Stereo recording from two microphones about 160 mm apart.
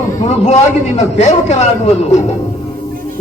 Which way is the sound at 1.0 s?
45° left (ahead or behind).